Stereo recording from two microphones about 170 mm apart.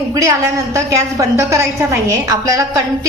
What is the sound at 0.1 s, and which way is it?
A woman's voice, 20° right (ahead or behind).